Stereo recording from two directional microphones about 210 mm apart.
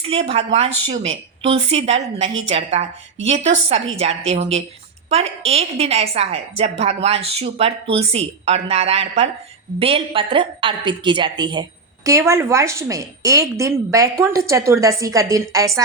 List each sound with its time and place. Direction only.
0.0 s a woman's voice: 30° right (ahead or behind)